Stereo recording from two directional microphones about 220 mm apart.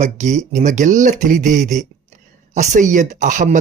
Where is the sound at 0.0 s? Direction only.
35° right (ahead or behind).